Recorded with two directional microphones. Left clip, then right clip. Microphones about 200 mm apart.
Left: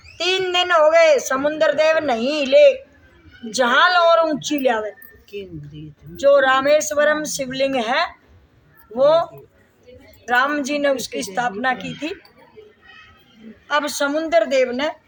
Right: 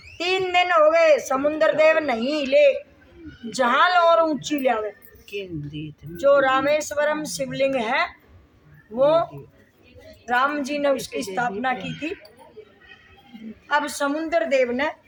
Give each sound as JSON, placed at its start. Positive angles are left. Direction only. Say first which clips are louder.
{"t": 0.2, "sound": "speech", "louder": "left 2 dB", "side_deg": 15}
{"t": 5.3, "sound": "speech", "louder": "right 2 dB", "side_deg": -55}
{"t": 6.1, "sound": "speech", "louder": "left 3 dB", "side_deg": 15}
{"t": 10.2, "sound": "speech", "louder": "left 3 dB", "side_deg": 15}
{"t": 13.7, "sound": "speech", "louder": "left 2 dB", "side_deg": 15}